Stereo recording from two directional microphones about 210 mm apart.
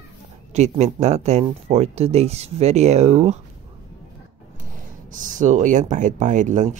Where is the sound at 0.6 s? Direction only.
30° right (ahead or behind).